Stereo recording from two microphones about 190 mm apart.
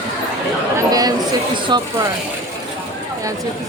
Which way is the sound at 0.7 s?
20° right (ahead or behind).